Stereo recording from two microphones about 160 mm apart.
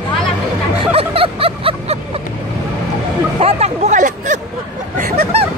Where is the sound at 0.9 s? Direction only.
35° right (ahead or behind).